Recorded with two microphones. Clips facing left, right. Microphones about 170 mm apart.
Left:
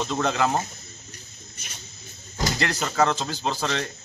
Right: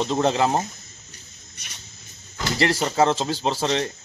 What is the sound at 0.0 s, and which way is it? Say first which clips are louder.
Speech: right 3 dB; 25° right (ahead or behind).